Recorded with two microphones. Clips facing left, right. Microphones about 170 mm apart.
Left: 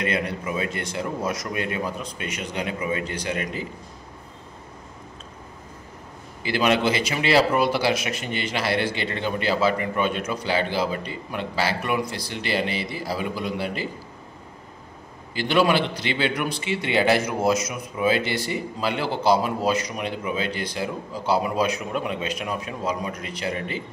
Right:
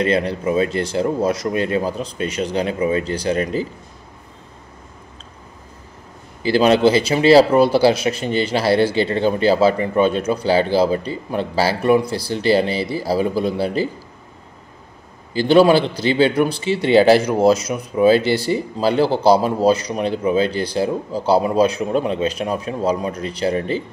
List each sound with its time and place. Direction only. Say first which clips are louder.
0.0 s speech: right 8 dB; 30° right (ahead or behind)
6.4 s speech: right 8 dB; 30° right (ahead or behind)
15.3 s speech: right 8 dB; 30° right (ahead or behind)